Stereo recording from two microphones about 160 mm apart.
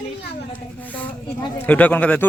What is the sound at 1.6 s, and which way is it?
Speech, 10° left (ahead or behind).